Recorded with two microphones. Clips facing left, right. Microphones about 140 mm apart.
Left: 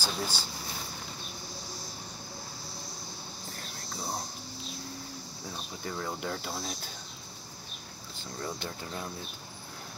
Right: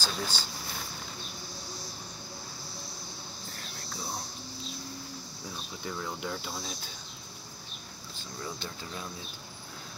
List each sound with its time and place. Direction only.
0.0 s speech: 10° left (ahead or behind)
5.9 s cricket: 45° left (ahead or behind)